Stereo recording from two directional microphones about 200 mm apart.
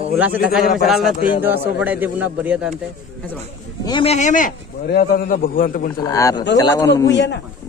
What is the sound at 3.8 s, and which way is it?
A man's voice, 25° left (ahead or behind).